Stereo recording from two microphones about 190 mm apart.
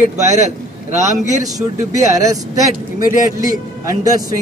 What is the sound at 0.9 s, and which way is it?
Speech, 40° right (ahead or behind).